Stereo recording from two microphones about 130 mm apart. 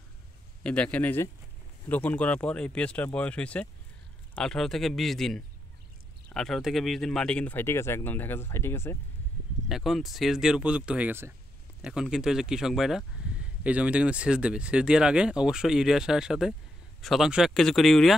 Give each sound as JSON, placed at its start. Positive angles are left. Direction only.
{"t": 0.7, "sound": "speech", "side_deg": 10}
{"t": 9.7, "sound": "speech", "side_deg": -5}
{"t": 11.8, "sound": "speech", "side_deg": -5}